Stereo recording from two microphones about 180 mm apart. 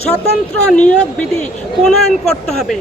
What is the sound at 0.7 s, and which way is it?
Speech, 5° left (ahead or behind).